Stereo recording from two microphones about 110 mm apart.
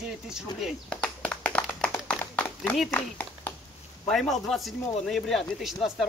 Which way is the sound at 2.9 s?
20° left (ahead or behind).